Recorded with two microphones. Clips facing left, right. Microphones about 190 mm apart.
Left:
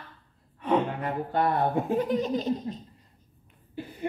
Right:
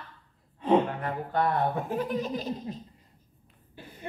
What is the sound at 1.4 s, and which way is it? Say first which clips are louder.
Speech: left 2 dB; 20° left (ahead or behind).